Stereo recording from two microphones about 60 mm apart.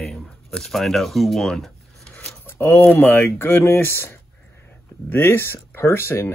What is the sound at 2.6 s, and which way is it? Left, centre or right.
Speech, left.